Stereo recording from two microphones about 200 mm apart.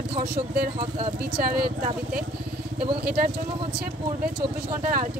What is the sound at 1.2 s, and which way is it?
Speech, 50° right (ahead or behind).